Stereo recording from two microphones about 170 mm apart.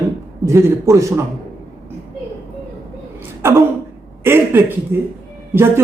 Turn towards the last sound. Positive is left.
turn(degrees=-15)  # may be behind; listen again after turning